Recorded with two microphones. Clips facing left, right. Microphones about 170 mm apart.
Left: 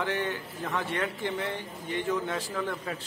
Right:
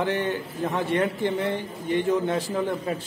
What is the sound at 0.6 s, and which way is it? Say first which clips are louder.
Speech: right 7 dB; 25° right (ahead or behind).